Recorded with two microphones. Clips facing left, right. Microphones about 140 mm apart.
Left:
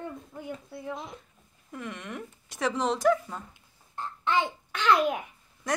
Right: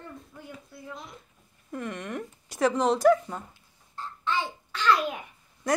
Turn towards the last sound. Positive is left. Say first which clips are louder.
# right 4 dB
turn(degrees=0)  # may be behind; listen again after turning